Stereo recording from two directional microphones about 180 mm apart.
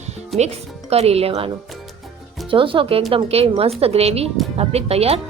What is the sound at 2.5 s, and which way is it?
A woman's voice, 30° right (ahead or behind).